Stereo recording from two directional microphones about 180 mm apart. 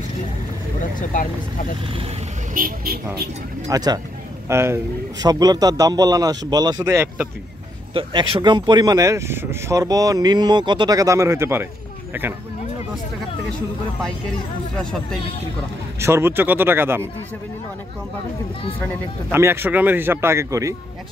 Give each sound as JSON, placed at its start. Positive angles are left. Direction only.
{"t": 0.9, "sound": "speech", "side_deg": 45}
{"t": 2.5, "sound": "speech", "side_deg": -55}
{"t": 3.6, "sound": "speech", "side_deg": -20}
{"t": 7.9, "sound": "speech", "side_deg": -25}
{"t": 14.8, "sound": "speech", "side_deg": 5}
{"t": 16.0, "sound": "speech", "side_deg": -15}
{"t": 19.3, "sound": "speech", "side_deg": -15}